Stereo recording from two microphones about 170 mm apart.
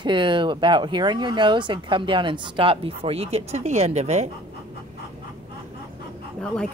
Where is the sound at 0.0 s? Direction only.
30° right (ahead or behind).